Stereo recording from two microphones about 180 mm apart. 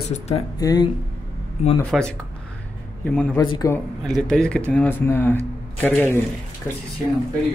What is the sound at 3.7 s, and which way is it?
Speech, 5° left (ahead or behind).